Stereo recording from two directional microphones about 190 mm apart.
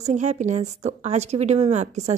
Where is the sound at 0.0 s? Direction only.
35° right (ahead or behind).